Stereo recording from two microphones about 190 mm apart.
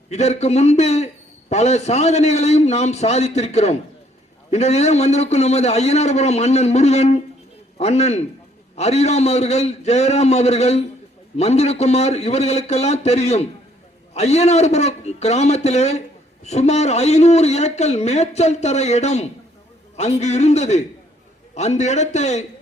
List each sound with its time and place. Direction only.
0.1 s a man's voice: 35° left (ahead or behind)